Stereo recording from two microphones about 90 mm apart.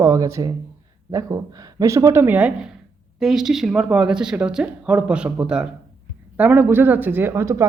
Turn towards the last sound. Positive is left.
turn(degrees=-30)  # may be behind; listen again after turning